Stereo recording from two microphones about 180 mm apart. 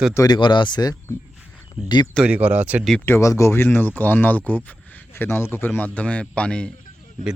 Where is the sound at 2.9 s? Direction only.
10° left (ahead or behind).